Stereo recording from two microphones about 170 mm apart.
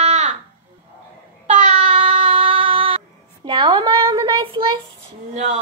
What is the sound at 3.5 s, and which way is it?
A woman's voice, 25° right (ahead or behind).